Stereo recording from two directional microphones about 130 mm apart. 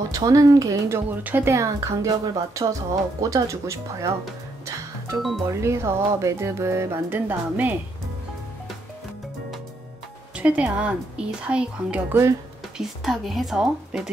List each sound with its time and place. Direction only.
0.1 s speech: 30° right (ahead or behind)
5.5 s speech: 20° right (ahead or behind)
10.3 s speech: 10° right (ahead or behind)